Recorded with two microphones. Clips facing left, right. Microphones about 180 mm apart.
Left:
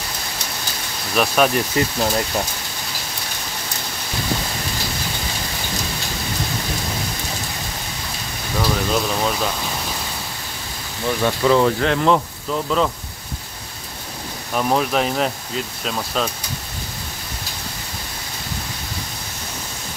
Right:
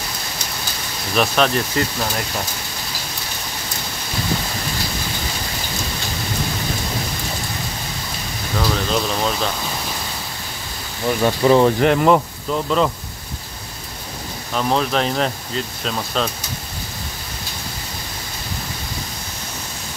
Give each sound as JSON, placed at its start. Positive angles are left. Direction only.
{"t": 1.1, "sound": "speech", "side_deg": 5}
{"t": 1.8, "sound": "speech", "side_deg": 20}
{"t": 8.5, "sound": "speech", "side_deg": 0}
{"t": 11.2, "sound": "speech", "side_deg": -20}
{"t": 12.6, "sound": "speech", "side_deg": 0}
{"t": 14.5, "sound": "speech", "side_deg": 10}